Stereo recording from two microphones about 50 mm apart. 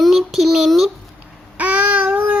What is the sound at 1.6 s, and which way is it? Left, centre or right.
Child singing, right.